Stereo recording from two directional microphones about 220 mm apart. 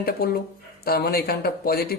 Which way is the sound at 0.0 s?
45° left (ahead or behind).